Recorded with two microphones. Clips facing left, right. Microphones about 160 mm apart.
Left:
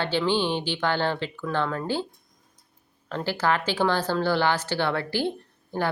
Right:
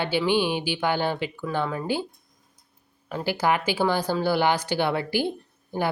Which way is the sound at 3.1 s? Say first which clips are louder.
Right 1 dB; 10° right (ahead or behind).